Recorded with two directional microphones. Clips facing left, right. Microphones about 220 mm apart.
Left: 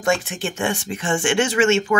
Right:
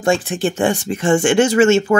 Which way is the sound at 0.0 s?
30° right (ahead or behind).